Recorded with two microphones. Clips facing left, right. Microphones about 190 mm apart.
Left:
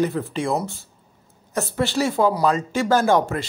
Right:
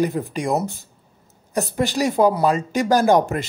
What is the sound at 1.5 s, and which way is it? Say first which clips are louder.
Speech: right 1 dB; 15° right (ahead or behind).